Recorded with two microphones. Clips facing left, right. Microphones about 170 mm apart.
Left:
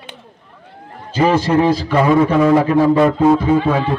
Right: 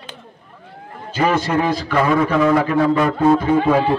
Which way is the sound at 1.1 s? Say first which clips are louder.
Left 4 dB; 30° left (ahead or behind).